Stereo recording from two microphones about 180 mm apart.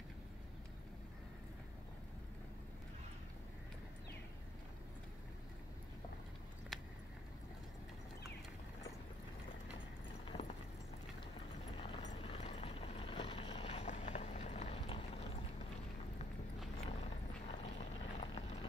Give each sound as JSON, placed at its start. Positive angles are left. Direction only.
{"t": 11.7, "sound": "vehicle", "side_deg": 30}
{"t": 16.7, "sound": "clip-clop", "side_deg": 35}